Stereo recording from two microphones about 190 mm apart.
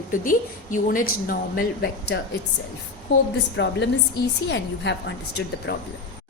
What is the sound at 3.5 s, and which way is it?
A woman's voice, 70° left (ahead or behind).